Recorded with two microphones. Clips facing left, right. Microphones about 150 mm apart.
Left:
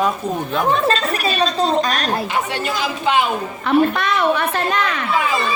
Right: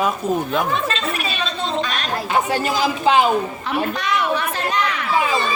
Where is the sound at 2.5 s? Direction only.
35° right (ahead or behind).